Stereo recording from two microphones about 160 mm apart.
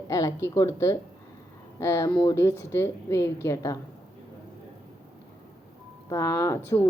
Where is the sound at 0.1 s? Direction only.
20° left (ahead or behind).